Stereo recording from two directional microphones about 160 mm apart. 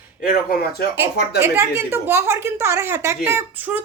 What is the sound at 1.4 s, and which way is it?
A woman's voice, 15° right (ahead or behind).